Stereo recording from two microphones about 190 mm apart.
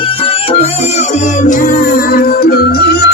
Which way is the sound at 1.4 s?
40° left (ahead or behind).